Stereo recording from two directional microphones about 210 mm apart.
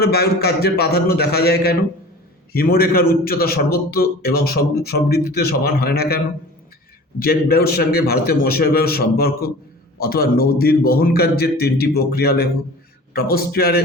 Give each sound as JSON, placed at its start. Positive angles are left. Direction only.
{"t": 0.0, "sound": "a man's voice", "side_deg": 50}